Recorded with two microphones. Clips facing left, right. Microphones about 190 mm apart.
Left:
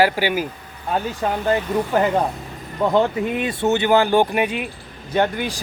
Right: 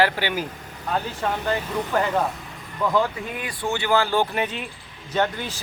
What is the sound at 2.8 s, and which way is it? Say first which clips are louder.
Speech: left 5 dB; 30° left (ahead or behind).